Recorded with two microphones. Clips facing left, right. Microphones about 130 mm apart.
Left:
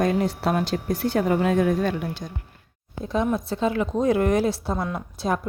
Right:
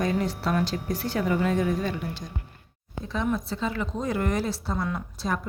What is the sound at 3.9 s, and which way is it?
Speech, 50° left (ahead or behind).